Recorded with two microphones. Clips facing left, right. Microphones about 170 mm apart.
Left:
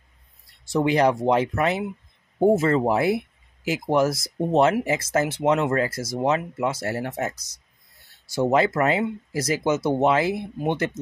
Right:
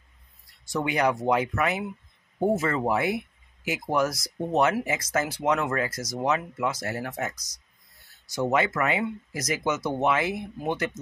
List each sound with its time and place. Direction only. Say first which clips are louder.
0.7 s speech: left 5 dB; 30° left (ahead or behind)